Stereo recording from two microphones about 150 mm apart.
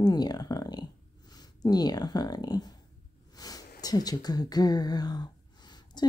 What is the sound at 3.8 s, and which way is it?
Speech, 25° left (ahead or behind).